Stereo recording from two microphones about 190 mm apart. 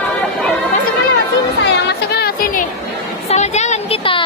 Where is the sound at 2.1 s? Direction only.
50° left (ahead or behind).